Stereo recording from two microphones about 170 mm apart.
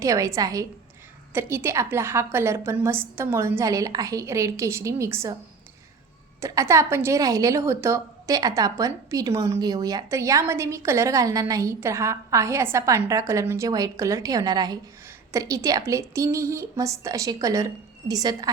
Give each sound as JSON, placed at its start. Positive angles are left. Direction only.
{"t": 0.0, "sound": "a woman's voice", "side_deg": -20}
{"t": 6.4, "sound": "a woman's voice", "side_deg": -20}